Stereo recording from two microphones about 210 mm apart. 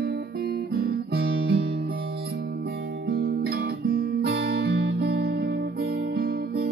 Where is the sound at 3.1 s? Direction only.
50° right (ahead or behind).